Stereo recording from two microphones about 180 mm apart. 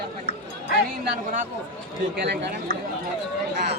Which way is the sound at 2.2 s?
70° right (ahead or behind).